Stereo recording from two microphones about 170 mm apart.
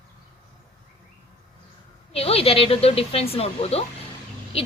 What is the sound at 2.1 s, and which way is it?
Speech, 35° left (ahead or behind).